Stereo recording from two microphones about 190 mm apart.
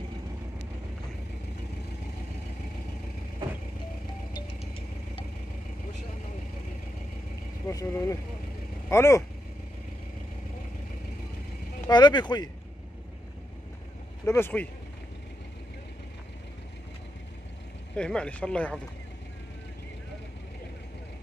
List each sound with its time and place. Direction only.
4.3 s vehicle: 30° left (ahead or behind)
7.6 s speech: 15° left (ahead or behind)
11.9 s speech: 20° left (ahead or behind)
14.2 s speech: 10° left (ahead or behind)
17.9 s speech: 5° left (ahead or behind)